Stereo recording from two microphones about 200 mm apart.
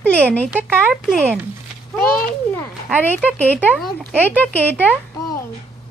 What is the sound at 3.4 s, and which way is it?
Speech, 10° left (ahead or behind).